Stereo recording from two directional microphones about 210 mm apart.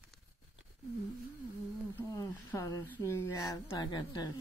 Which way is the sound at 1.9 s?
15° left (ahead or behind).